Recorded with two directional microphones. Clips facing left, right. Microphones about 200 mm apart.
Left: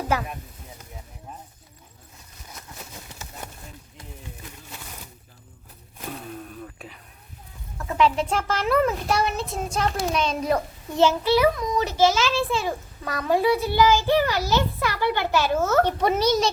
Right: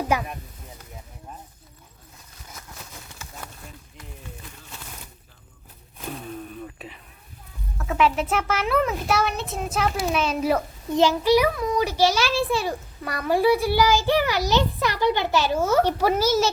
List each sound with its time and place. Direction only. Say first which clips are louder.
0.1 s a child's voice: even; 15° right (ahead or behind)
6.7 s a sound: right 2 dB; centre (ahead or behind)
7.8 s a child's voice: even; centre (ahead or behind)